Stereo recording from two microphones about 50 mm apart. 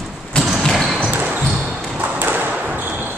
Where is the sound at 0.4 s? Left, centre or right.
Centre.